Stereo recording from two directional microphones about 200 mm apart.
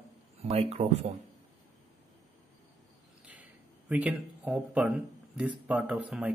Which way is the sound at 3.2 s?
5° right (ahead or behind).